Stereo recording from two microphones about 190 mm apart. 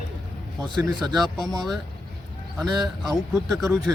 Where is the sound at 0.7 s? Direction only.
25° right (ahead or behind).